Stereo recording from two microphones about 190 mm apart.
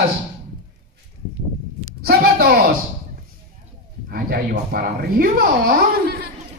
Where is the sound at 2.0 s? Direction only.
50° right (ahead or behind).